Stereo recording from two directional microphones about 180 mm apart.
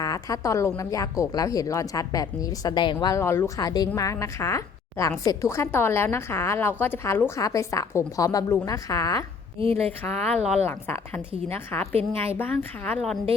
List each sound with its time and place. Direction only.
0.0 s a woman's voice: 20° left (ahead or behind)
9.6 s speech: 35° right (ahead or behind)
10.0 s a woman's voice: 5° left (ahead or behind)